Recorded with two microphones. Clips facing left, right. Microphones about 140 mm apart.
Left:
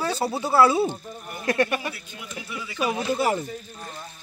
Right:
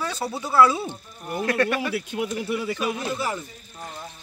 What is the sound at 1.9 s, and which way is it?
Speech, 70° right (ahead or behind).